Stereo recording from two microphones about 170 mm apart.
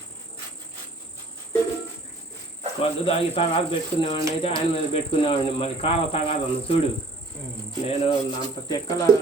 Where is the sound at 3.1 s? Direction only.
30° left (ahead or behind).